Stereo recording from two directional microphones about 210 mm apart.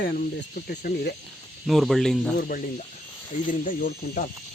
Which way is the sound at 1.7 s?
Centre (ahead or behind).